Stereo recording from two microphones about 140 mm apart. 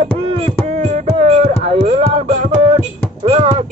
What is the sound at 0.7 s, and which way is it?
Beatboxing, 60° right (ahead or behind).